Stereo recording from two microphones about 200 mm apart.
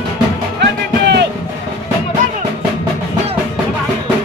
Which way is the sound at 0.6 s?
55° right (ahead or behind).